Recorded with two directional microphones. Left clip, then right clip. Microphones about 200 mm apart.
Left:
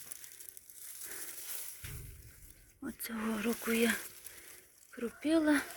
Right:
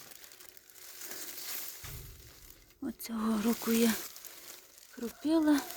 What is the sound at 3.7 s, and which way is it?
Speech, 35° right (ahead or behind).